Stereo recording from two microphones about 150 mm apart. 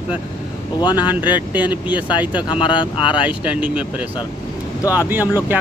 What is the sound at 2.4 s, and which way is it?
Speech, 30° left (ahead or behind).